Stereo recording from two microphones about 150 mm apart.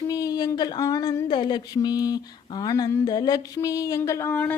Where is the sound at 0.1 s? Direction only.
25° left (ahead or behind).